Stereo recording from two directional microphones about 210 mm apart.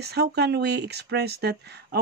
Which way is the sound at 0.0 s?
50° right (ahead or behind).